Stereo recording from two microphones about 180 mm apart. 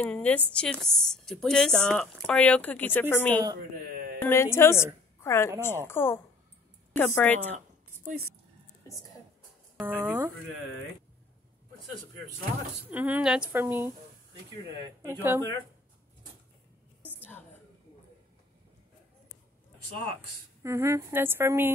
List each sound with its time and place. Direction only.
0.0 s a woman's voice: 5° left (ahead or behind)
3.9 s a sound: 60° right (ahead or behind)
4.2 s a woman's voice: 15° left (ahead or behind)
7.5 s a sound: 40° right (ahead or behind)
9.8 s speech: 10° right (ahead or behind)
12.9 s speech: 10° right (ahead or behind)
15.0 s speech: 10° right (ahead or behind)
20.6 s speech: 15° right (ahead or behind)